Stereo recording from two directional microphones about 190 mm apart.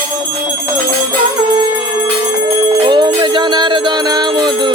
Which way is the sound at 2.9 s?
25° right (ahead or behind).